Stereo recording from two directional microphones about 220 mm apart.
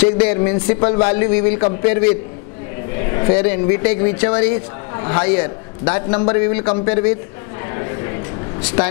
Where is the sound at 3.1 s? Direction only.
20° left (ahead or behind).